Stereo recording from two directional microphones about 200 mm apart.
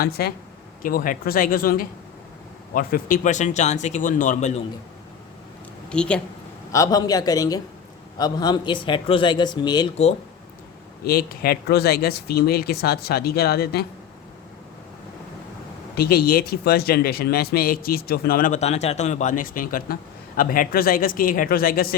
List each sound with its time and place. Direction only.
0.0 s speech: 50° left (ahead or behind)
5.9 s speech: 5° left (ahead or behind)
6.7 s a man's voice: 15° left (ahead or behind)
11.0 s speech: 50° left (ahead or behind)
16.0 s speech: 50° left (ahead or behind)